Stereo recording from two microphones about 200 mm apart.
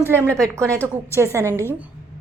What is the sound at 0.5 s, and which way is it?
A woman's voice, 15° right (ahead or behind).